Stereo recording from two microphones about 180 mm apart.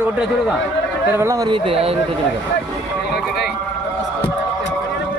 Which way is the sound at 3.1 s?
65° left (ahead or behind).